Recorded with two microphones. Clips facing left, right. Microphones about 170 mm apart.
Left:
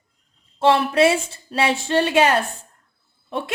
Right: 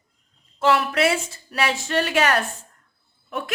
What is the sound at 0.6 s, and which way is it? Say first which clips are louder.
Speech: left 4 dB; 25° left (ahead or behind).